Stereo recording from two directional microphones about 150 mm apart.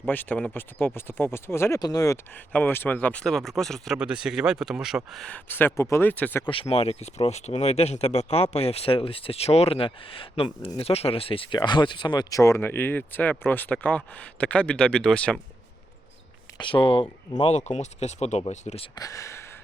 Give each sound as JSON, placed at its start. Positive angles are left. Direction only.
{"t": 0.1, "sound": "speech", "side_deg": 10}
{"t": 2.5, "sound": "speech", "side_deg": 10}
{"t": 6.5, "sound": "speech", "side_deg": 40}
{"t": 16.6, "sound": "speech", "side_deg": 35}
{"t": 17.5, "sound": "speech", "side_deg": 50}
{"t": 18.9, "sound": "speech", "side_deg": 20}